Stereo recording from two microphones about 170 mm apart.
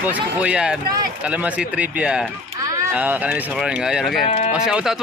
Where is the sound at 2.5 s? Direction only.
20° right (ahead or behind).